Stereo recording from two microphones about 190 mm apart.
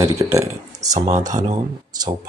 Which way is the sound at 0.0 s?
15° right (ahead or behind).